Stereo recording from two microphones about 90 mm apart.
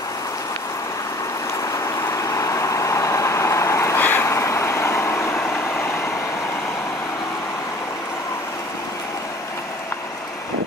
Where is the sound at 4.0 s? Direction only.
25° left (ahead or behind).